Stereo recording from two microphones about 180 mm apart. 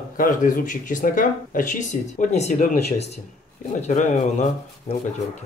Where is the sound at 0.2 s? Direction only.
50° left (ahead or behind).